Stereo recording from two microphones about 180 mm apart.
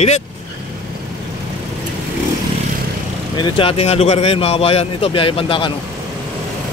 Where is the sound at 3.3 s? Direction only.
25° left (ahead or behind).